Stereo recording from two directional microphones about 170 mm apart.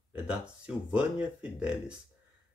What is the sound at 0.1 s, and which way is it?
Speech, 5° right (ahead or behind).